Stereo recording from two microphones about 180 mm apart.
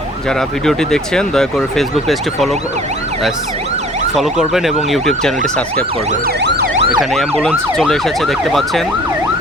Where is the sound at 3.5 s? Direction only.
40° right (ahead or behind).